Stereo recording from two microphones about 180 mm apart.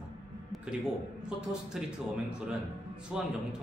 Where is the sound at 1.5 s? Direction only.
5° right (ahead or behind).